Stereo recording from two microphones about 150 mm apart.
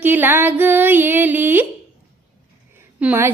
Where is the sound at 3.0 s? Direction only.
10° right (ahead or behind).